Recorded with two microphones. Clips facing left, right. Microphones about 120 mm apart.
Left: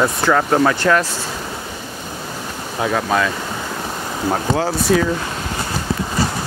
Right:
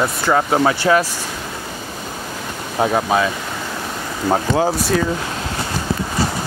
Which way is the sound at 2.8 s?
35° right (ahead or behind).